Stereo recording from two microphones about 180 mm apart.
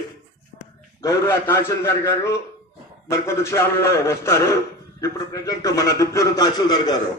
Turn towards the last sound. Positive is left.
turn(degrees=20)  # may be behind; listen again after turning